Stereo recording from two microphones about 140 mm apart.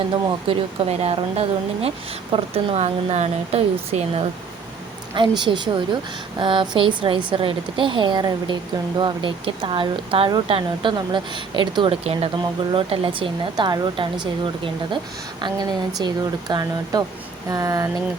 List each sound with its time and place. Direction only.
0.3 s speech: 45° right (ahead or behind)
5.4 s speech: 35° right (ahead or behind)
15.4 s speech: 30° right (ahead or behind)